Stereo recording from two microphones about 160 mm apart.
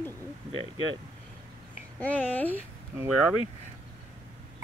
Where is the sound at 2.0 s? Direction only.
10° left (ahead or behind).